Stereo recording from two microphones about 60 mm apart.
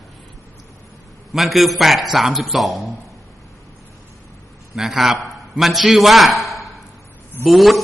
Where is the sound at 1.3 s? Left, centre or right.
Centre.